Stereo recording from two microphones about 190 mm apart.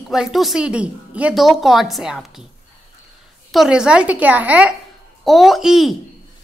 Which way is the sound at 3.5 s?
Centre (ahead or behind).